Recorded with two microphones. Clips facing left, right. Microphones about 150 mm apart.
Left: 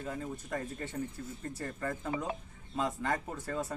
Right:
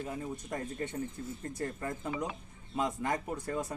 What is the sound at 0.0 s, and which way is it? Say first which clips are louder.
A man's voice: right 1 dB; 15° right (ahead or behind).